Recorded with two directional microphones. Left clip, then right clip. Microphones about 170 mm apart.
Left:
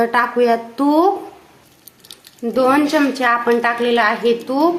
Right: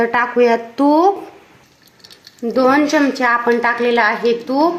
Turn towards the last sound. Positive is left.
turn(degrees=-15)  # may be behind; listen again after turning